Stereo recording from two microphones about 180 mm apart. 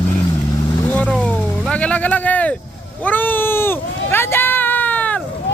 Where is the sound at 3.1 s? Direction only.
10° left (ahead or behind).